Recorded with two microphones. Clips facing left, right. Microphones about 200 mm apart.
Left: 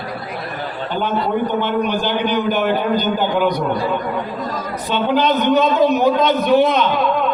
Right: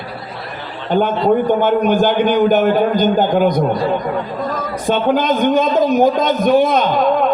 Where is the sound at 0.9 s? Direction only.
50° right (ahead or behind).